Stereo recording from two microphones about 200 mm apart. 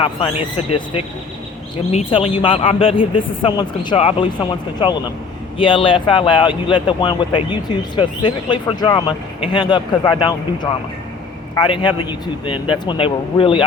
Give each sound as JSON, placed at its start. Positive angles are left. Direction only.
{"t": 0.0, "sound": "speech", "side_deg": 25}
{"t": 1.9, "sound": "speech", "side_deg": 30}